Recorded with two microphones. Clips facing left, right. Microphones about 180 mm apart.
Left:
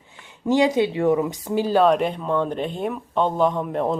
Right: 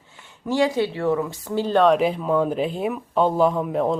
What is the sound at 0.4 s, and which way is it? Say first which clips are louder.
Speech: left 2 dB; 20° left (ahead or behind).